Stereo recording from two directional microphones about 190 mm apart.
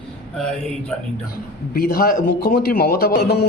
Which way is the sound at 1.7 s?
50° left (ahead or behind).